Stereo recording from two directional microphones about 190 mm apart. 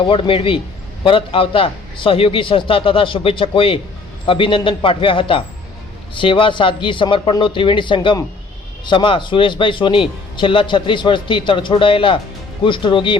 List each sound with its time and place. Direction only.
0.0 s speech: 30° left (ahead or behind)